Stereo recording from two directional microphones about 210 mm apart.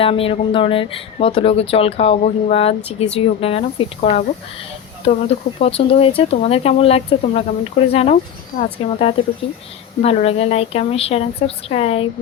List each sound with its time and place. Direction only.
0.0 s speech: 25° left (ahead or behind)